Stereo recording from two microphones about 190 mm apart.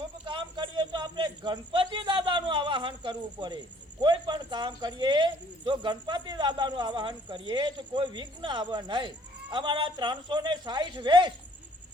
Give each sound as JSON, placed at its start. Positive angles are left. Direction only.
{"t": 0.3, "sound": "speech", "side_deg": -25}